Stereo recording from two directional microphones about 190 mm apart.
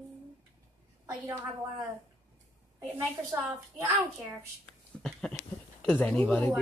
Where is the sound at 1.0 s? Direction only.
15° right (ahead or behind).